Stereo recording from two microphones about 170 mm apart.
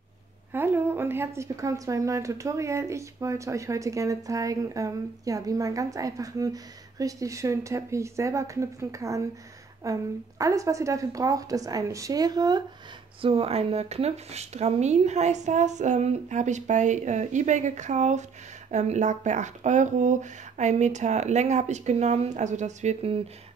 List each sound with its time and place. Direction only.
0.5 s a woman's voice: 10° right (ahead or behind); by 23.1 s 40° right (ahead or behind)